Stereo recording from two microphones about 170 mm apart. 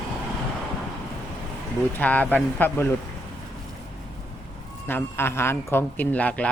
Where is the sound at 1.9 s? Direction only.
10° left (ahead or behind).